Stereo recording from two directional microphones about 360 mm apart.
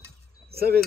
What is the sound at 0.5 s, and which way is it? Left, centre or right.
Speech, right.